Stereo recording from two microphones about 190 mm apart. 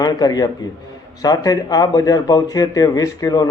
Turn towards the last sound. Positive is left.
turn(degrees=20)  # may be behind; listen again after turning